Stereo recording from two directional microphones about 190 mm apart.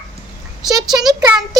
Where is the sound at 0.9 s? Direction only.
20° right (ahead or behind).